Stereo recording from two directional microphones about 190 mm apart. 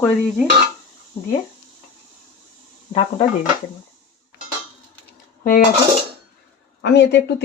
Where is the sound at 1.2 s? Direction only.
30° left (ahead or behind).